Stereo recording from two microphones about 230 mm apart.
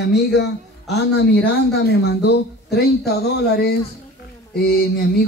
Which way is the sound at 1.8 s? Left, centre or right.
Left.